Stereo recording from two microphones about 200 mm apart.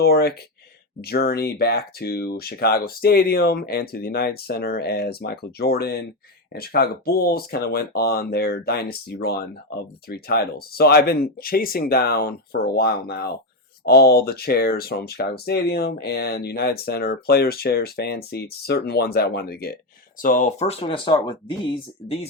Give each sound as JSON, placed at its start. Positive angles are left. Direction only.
{"t": 0.0, "sound": "speech", "side_deg": 50}
{"t": 20.2, "sound": "speech", "side_deg": 40}